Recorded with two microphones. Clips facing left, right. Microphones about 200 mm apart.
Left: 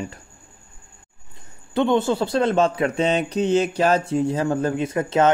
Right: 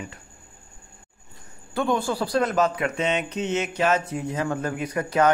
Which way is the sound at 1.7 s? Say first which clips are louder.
Left 5 dB; 20° left (ahead or behind).